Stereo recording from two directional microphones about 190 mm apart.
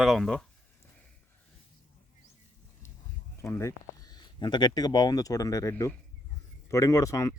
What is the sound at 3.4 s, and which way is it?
Speech, 15° left (ahead or behind).